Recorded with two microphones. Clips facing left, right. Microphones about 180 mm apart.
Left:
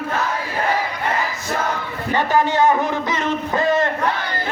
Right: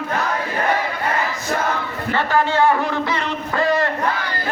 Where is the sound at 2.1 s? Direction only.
15° left (ahead or behind).